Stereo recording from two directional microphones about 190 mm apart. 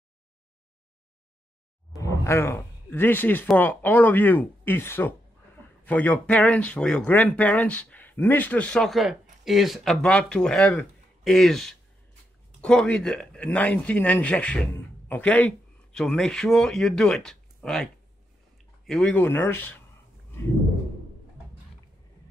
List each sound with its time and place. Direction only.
2.0 s a man's voice: 15° left (ahead or behind)
18.9 s speech: 5° left (ahead or behind)